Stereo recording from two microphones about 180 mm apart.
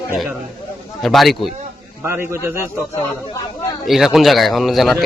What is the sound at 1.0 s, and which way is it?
Speech, centre (ahead or behind).